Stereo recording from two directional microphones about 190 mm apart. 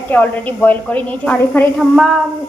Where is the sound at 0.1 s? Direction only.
10° left (ahead or behind).